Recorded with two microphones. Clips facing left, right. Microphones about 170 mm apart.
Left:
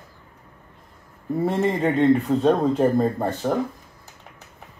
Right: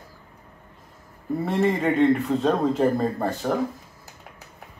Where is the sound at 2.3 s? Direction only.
10° left (ahead or behind).